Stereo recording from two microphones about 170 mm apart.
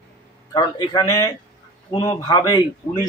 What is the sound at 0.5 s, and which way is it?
Speech, 25° left (ahead or behind).